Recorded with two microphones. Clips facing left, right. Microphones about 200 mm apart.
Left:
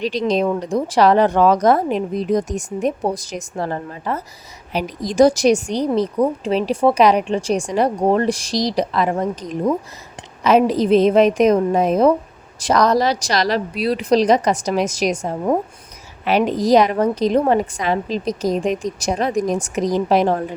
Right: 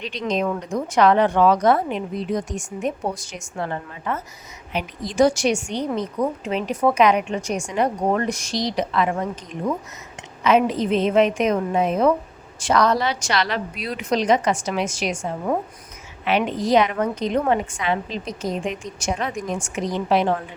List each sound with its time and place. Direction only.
0.0 s a woman's voice: 35° left (ahead or behind)